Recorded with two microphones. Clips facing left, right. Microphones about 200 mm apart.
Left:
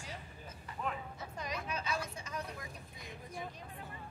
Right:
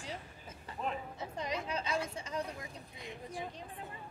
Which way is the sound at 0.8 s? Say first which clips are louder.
Right 2 dB; 25° right (ahead or behind).